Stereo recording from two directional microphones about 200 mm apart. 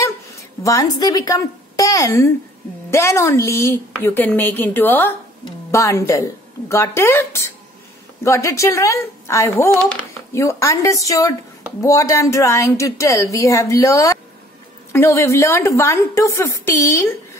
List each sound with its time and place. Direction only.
0.0 s a woman's voice: 15° left (ahead or behind)